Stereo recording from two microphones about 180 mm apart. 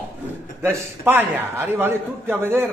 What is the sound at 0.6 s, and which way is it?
A man's voice, 15° right (ahead or behind).